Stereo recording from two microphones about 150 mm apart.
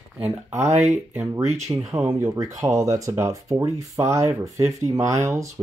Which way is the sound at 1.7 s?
20° right (ahead or behind).